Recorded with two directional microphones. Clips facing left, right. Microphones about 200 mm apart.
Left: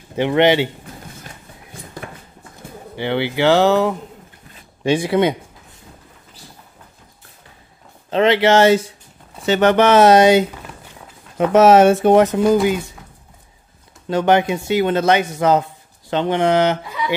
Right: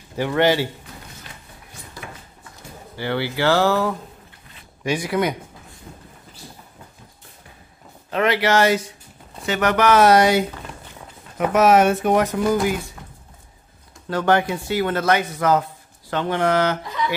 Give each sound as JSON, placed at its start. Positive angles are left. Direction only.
{"t": 0.1, "sound": "speech", "side_deg": 20}
{"t": 1.2, "sound": "a sound", "side_deg": 55}
{"t": 3.0, "sound": "speech", "side_deg": 20}
{"t": 8.1, "sound": "speech", "side_deg": 25}
{"t": 14.0, "sound": "speech", "side_deg": 20}